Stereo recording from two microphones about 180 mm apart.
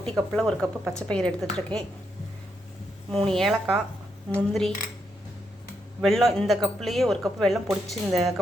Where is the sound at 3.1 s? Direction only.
Centre (ahead or behind).